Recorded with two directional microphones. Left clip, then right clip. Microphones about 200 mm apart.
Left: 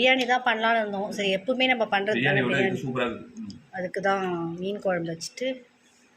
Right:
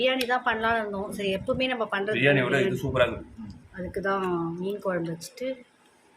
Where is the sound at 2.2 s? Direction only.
60° right (ahead or behind).